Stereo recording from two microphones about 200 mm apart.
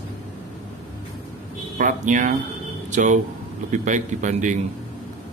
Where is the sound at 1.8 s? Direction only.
40° right (ahead or behind).